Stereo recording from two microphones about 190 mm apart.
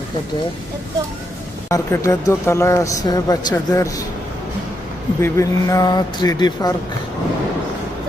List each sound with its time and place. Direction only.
1.7 s a man's voice: 15° left (ahead or behind)
5.2 s speech: 15° left (ahead or behind)